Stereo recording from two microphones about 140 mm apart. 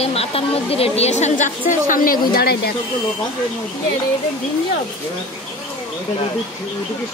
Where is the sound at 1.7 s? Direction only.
75° left (ahead or behind).